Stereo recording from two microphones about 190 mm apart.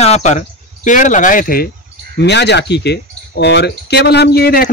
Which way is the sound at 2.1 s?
65° left (ahead or behind).